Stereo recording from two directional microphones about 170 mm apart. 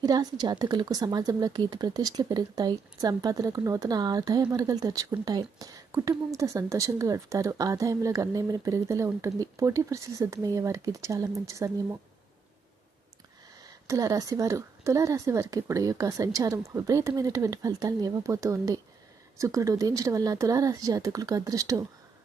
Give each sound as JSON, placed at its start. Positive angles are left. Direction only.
{"t": 0.0, "sound": "a woman's voice", "side_deg": -20}
{"t": 13.8, "sound": "a woman's voice", "side_deg": -20}